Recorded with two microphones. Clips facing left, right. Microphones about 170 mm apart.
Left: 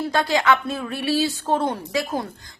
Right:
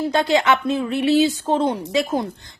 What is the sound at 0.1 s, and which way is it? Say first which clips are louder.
A woman's voice: right 1 dB; 25° right (ahead or behind).